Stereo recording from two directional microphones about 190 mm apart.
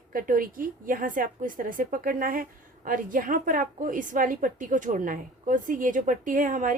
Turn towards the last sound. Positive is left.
turn(degrees=-45)  # may be behind; listen again after turning